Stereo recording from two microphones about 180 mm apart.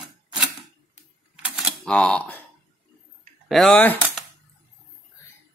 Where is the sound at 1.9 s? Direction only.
5° left (ahead or behind).